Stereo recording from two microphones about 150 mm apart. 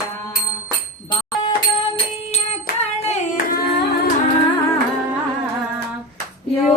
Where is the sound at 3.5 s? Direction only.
90° left.